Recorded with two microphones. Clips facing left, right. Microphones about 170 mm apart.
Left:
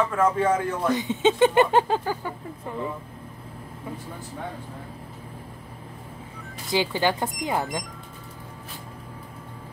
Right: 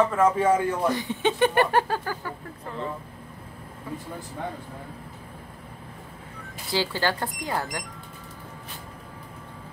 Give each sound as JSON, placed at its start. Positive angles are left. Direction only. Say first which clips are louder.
{"t": 0.1, "sound": "speech", "louder": "right 1 dB", "side_deg": -5}
{"t": 0.9, "sound": "speech", "louder": "left 4 dB", "side_deg": 20}
{"t": 6.7, "sound": "speech", "louder": "left 3 dB", "side_deg": 20}